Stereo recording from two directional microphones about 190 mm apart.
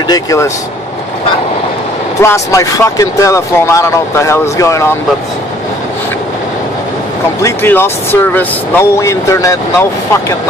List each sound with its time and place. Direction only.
0.0 s speech: 20° left (ahead or behind)
2.2 s speech: 15° left (ahead or behind)
7.4 s speech: 10° left (ahead or behind)